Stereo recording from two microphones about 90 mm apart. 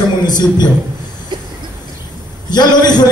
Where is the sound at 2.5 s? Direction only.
50° left (ahead or behind).